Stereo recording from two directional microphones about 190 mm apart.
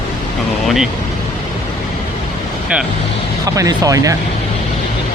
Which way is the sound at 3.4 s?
20° right (ahead or behind).